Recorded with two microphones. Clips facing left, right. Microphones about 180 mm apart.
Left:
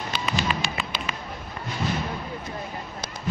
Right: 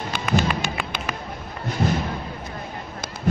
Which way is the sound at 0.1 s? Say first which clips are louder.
Right 5 dB; 50° right (ahead or behind).